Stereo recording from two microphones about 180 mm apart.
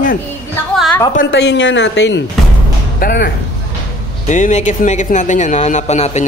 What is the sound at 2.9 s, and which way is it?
Speech, 55° left (ahead or behind).